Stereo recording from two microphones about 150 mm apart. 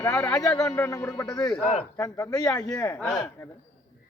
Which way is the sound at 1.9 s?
20° left (ahead or behind).